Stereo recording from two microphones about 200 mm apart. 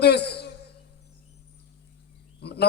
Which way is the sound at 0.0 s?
55° left (ahead or behind).